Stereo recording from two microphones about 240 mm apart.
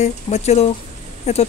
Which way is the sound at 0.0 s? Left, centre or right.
Left.